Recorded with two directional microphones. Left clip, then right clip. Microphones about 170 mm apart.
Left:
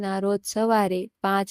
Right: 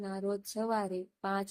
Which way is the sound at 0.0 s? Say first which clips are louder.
Left 11 dB; 50° left (ahead or behind).